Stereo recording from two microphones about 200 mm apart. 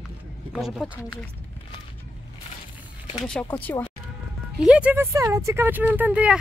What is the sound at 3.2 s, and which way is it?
Speech, 5° left (ahead or behind).